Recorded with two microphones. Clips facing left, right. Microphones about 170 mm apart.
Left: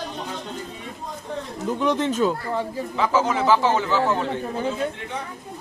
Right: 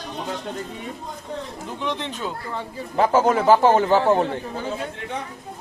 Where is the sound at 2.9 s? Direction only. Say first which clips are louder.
Right 4 dB; 50° right (ahead or behind).